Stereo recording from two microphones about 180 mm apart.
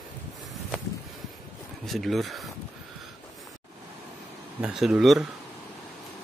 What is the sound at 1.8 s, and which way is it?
Speech, centre (ahead or behind).